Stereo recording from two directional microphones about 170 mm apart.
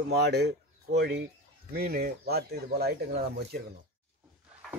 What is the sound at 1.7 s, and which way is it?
Speech, 70° right (ahead or behind).